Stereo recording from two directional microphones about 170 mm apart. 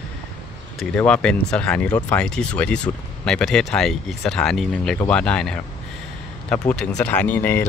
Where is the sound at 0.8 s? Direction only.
5° left (ahead or behind).